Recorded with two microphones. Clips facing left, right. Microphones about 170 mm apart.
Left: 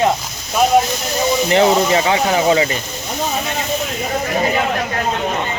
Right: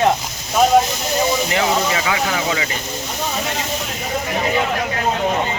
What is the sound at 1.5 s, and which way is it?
Speech, 30° left (ahead or behind).